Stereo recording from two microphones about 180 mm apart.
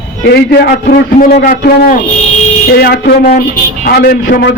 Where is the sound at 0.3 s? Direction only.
65° left (ahead or behind).